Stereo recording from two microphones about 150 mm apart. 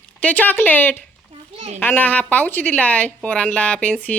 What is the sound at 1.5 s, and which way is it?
Speech, 45° right (ahead or behind).